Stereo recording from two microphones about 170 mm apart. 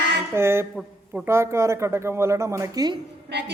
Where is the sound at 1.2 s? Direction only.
15° right (ahead or behind).